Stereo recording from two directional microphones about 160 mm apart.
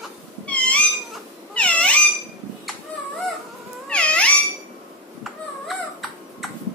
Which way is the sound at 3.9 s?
5° left (ahead or behind).